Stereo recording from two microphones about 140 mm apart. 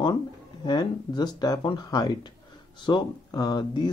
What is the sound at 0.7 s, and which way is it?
Speech, 30° left (ahead or behind).